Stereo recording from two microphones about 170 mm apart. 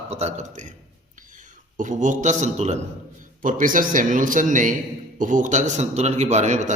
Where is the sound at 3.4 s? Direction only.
50° right (ahead or behind).